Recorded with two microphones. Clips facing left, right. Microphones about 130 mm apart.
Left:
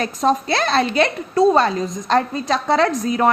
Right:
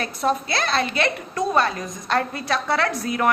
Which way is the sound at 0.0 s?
40° left (ahead or behind).